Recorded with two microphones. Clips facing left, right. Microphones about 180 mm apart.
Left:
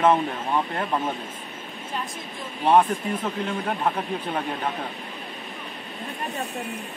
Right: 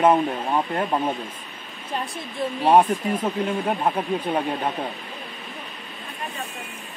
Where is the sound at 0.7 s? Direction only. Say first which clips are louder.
Right 3 dB; 25° right (ahead or behind).